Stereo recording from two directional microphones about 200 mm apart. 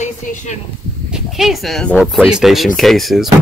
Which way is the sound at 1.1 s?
Centre (ahead or behind).